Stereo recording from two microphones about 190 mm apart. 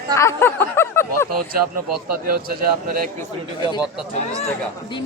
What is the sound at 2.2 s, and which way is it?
Speech, 50° right (ahead or behind).